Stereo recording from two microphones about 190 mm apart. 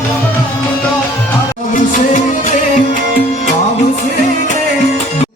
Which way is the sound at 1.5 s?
45° left (ahead or behind).